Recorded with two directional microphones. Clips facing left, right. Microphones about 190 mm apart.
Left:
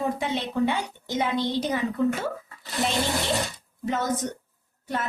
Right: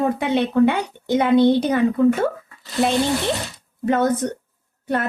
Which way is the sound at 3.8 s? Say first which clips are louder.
Right 8 dB; 60° right (ahead or behind).